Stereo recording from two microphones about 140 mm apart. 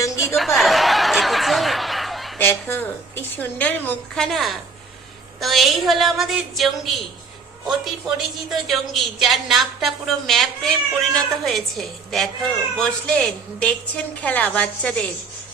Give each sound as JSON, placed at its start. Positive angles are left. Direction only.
{"t": 0.0, "sound": "chuckle", "side_deg": 20}
{"t": 0.3, "sound": "snicker", "side_deg": 0}
{"t": 2.4, "sound": "a woman's voice", "side_deg": 15}